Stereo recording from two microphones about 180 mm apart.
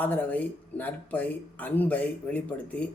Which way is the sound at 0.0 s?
10° left (ahead or behind).